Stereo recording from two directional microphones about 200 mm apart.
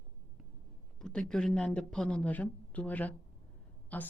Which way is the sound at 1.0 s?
5° left (ahead or behind).